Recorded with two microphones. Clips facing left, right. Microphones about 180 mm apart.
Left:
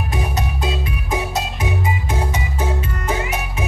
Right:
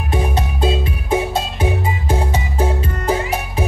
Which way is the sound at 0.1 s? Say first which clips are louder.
Right 7 dB; 30° right (ahead or behind).